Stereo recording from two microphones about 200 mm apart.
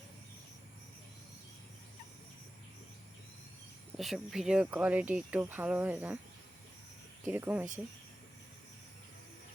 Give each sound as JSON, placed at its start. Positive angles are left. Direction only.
{"t": 3.9, "sound": "speech", "side_deg": 0}
{"t": 7.3, "sound": "speech", "side_deg": -10}